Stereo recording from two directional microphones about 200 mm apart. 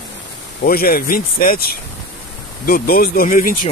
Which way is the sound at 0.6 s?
50° left (ahead or behind).